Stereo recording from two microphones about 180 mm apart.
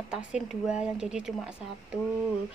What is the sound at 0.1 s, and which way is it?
A woman's voice, 5° right (ahead or behind).